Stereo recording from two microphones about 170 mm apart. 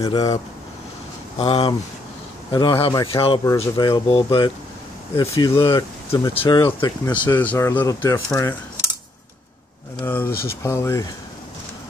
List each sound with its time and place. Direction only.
0.0 s speech: 20° left (ahead or behind)
1.4 s speech: 30° left (ahead or behind)
2.8 s speech: 25° left (ahead or behind)
5.7 s speech: 20° left (ahead or behind)
6.3 s speech: 30° left (ahead or behind)
7.1 s speech: 10° left (ahead or behind)
10.0 s speech: 15° left (ahead or behind)